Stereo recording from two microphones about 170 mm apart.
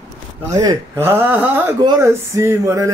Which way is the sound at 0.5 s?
20° right (ahead or behind).